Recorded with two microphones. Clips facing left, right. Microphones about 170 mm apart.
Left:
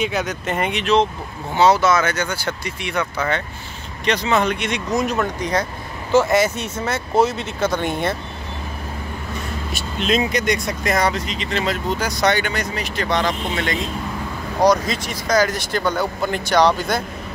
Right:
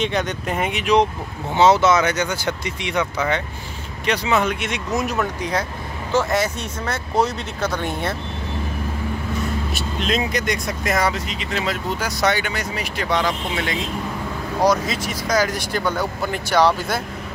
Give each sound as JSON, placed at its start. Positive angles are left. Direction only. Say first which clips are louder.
{"t": 0.0, "sound": "speech", "louder": "even", "side_deg": 5}
{"t": 1.5, "sound": "speech", "louder": "even", "side_deg": -20}
{"t": 6.1, "sound": "speech", "louder": "left 4 dB", "side_deg": 5}
{"t": 10.0, "sound": "speech", "louder": "left 3 dB", "side_deg": 0}